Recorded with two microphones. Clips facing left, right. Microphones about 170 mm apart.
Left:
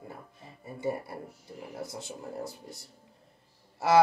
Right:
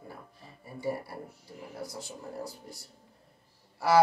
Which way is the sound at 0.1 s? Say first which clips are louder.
Left 1 dB; 20° left (ahead or behind).